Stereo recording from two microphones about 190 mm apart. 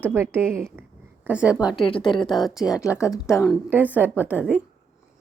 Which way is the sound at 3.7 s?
10° right (ahead or behind).